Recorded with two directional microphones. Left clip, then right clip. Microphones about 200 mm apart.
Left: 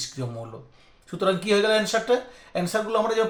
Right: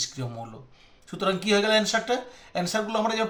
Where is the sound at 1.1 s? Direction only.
45° left (ahead or behind).